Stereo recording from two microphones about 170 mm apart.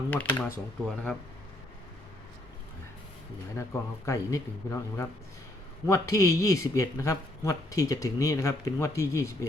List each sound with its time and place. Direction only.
0.1 s speech: 10° left (ahead or behind)
3.6 s speech: 20° left (ahead or behind)